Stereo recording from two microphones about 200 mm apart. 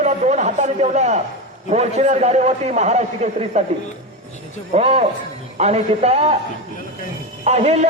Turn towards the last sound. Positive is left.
turn(degrees=-30)  # may be behind; listen again after turning